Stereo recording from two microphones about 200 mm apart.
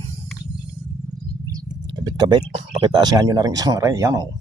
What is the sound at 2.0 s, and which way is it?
Speech, 20° right (ahead or behind).